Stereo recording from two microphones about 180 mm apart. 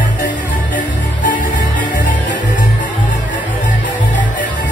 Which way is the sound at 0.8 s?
45° left (ahead or behind).